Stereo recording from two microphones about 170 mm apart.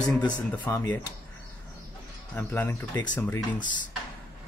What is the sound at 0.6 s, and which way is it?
Speech, 15° left (ahead or behind).